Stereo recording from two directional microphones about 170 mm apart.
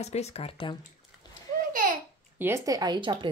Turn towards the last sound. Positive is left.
turn(degrees=-25)  # may be behind; listen again after turning